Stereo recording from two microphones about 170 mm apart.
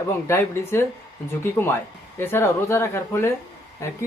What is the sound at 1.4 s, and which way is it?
Speech, 15° left (ahead or behind).